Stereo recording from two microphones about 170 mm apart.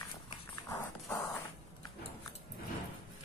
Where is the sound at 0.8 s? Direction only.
15° left (ahead or behind).